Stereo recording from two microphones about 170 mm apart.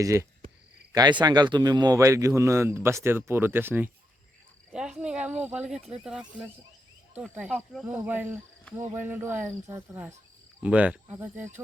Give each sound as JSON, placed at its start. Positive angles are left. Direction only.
{"t": 0.0, "sound": "a man's voice", "side_deg": -15}
{"t": 4.7, "sound": "cricket", "side_deg": -5}
{"t": 5.4, "sound": "a man's voice", "side_deg": -10}